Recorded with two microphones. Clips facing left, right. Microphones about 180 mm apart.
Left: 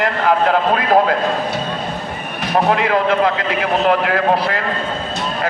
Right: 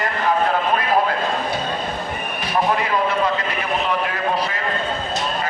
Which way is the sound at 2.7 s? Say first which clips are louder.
Left 6 dB; 65° left (ahead or behind).